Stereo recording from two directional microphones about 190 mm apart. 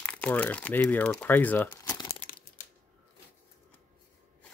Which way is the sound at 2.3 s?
50° left (ahead or behind).